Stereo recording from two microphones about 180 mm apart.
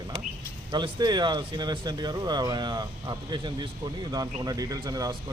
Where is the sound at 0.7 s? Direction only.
25° right (ahead or behind).